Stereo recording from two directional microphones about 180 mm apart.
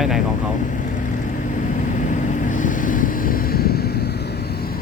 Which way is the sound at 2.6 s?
45° left (ahead or behind).